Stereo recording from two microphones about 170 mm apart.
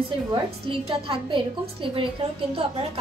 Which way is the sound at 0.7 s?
30° right (ahead or behind).